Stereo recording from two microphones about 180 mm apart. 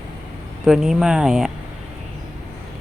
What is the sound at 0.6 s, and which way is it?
Speech, centre (ahead or behind).